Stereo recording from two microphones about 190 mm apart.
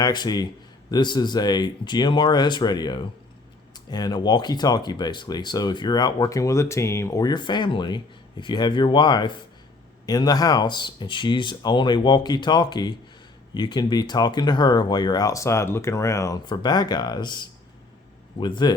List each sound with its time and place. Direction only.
0.0 s speech: 20° left (ahead or behind)